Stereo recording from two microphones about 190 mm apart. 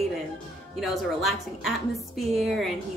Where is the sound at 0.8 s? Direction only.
Centre (ahead or behind).